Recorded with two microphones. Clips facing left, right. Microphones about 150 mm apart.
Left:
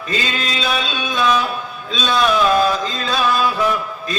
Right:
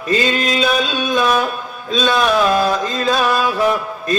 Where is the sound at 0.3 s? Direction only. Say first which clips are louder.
Right 5 dB; 45° right (ahead or behind).